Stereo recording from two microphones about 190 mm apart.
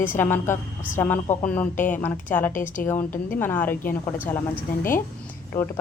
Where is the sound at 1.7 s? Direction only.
40° left (ahead or behind).